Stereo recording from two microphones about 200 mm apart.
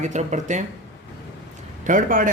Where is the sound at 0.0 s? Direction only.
35° right (ahead or behind).